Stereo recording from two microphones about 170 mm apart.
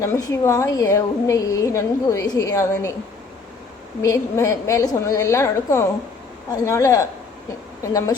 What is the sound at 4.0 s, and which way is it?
A woman's voice, 20° left (ahead or behind).